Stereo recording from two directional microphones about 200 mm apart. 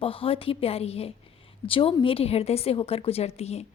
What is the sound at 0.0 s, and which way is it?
A woman's voice, 25° left (ahead or behind).